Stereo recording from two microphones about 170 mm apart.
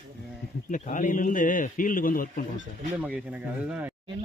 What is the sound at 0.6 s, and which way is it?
A man's voice, 50° left (ahead or behind).